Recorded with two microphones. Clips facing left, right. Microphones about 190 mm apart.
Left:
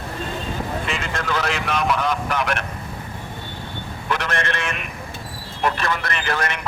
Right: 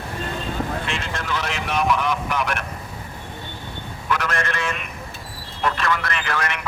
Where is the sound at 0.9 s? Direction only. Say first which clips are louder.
Left 1 dB; centre (ahead or behind).